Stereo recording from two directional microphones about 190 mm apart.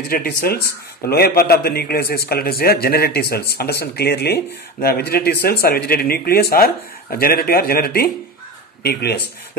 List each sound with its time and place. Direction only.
0.1 s a man's voice: 50° left (ahead or behind)